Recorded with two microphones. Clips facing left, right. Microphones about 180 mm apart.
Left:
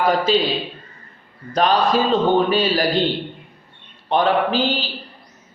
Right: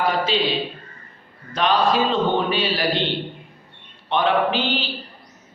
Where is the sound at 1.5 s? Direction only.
40° left (ahead or behind).